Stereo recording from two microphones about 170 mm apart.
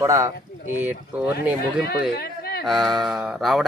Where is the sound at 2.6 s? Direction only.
Centre (ahead or behind).